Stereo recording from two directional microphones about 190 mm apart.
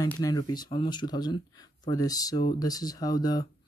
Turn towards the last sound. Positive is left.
turn(degrees=20)  # may be behind; listen again after turning